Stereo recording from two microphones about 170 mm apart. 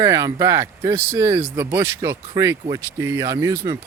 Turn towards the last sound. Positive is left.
turn(degrees=-20)  # may be behind; listen again after turning